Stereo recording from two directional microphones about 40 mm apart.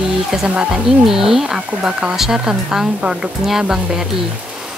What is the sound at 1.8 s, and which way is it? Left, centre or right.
Speech, right.